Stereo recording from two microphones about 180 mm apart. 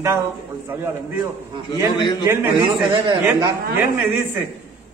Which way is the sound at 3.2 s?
15° right (ahead or behind).